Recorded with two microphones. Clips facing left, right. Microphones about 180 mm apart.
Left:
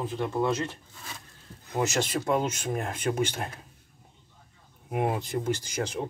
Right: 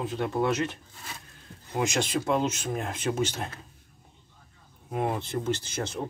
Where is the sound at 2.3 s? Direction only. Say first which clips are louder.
Even; 10° left (ahead or behind).